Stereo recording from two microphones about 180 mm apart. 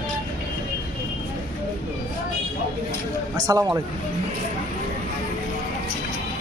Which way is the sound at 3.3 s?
20° right (ahead or behind).